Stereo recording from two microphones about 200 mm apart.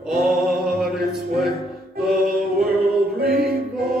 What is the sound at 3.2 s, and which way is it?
Music, 50° right (ahead or behind).